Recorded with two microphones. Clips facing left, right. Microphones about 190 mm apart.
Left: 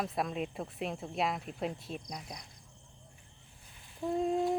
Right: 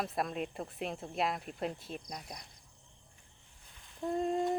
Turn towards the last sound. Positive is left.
turn(degrees=0)  # may be behind; listen again after turning